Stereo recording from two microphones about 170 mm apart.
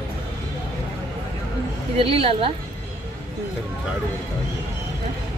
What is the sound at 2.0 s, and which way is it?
Speech, 35° right (ahead or behind).